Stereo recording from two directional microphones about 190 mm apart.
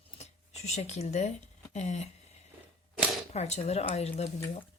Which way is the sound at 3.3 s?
35° left (ahead or behind).